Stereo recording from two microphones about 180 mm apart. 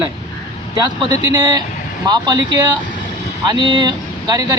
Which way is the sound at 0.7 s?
20° right (ahead or behind).